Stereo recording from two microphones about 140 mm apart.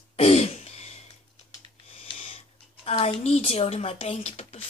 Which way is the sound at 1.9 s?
45° left (ahead or behind).